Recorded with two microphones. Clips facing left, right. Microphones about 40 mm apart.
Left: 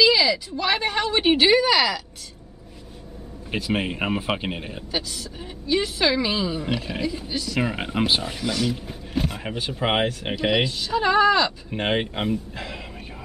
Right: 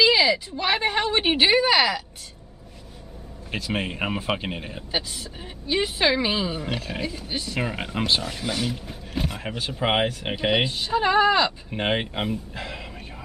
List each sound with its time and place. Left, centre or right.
0.0 s a woman's voice: centre
3.5 s speech: centre
4.9 s a woman's voice: right
6.9 s speech: centre
7.2 s a woman's voice: right
7.6 s speech: centre
8.4 s speech: centre
8.7 s speech: centre
10.3 s speech: centre
11.7 s speech: centre